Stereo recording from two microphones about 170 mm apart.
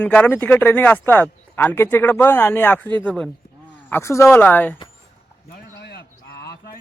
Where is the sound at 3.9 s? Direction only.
15° left (ahead or behind).